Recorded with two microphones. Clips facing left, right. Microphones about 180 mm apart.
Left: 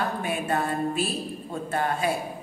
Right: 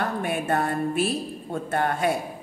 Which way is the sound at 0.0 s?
60° right (ahead or behind).